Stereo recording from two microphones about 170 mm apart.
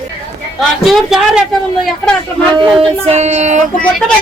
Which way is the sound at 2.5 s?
30° right (ahead or behind).